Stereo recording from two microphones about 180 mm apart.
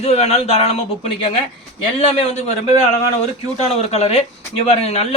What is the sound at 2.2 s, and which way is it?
Speech, 35° left (ahead or behind).